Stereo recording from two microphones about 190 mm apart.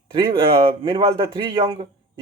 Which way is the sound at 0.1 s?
30° right (ahead or behind).